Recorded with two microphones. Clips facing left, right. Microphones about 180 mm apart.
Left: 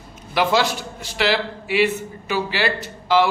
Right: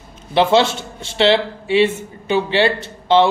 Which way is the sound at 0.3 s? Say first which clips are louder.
Right 5 dB; 25° right (ahead or behind).